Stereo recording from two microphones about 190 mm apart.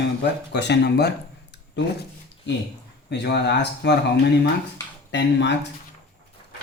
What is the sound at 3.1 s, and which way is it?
Speech, 60° left (ahead or behind).